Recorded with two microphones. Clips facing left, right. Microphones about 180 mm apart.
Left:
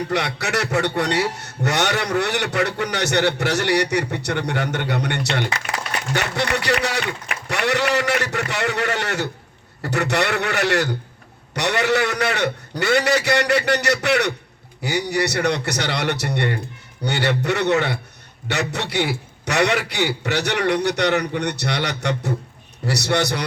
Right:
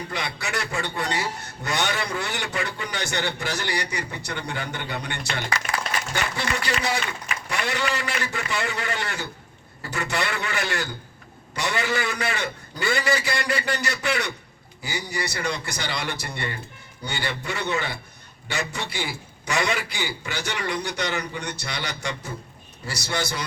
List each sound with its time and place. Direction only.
0.1 s a man's voice: 70° left (ahead or behind)